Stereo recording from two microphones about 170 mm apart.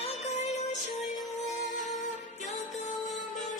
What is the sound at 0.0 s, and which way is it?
Music, 40° left (ahead or behind).